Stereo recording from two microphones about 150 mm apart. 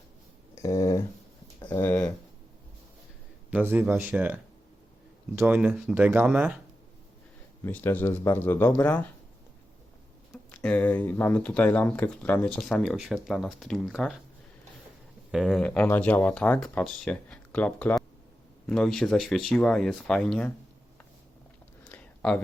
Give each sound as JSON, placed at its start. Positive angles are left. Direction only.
{"t": 0.5, "sound": "speech", "side_deg": 20}
{"t": 1.5, "sound": "a sound", "side_deg": 25}
{"t": 1.8, "sound": "speech", "side_deg": 10}
{"t": 3.5, "sound": "speech", "side_deg": -15}
{"t": 7.6, "sound": "speech", "side_deg": 15}
{"t": 10.3, "sound": "speech", "side_deg": 5}
{"t": 15.3, "sound": "speech", "side_deg": 0}
{"t": 21.8, "sound": "a sound", "side_deg": 10}